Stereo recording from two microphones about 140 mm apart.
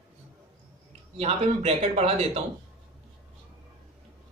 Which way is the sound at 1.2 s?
45° right (ahead or behind).